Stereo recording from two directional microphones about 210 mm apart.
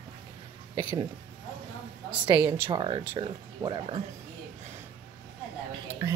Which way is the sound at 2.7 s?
25° right (ahead or behind).